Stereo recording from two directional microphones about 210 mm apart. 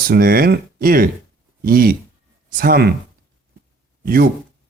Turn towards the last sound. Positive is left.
turn(degrees=-45)  # may be behind; listen again after turning